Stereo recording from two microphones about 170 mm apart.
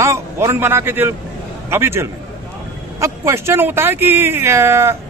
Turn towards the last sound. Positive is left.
turn(degrees=-15)  # may be behind; listen again after turning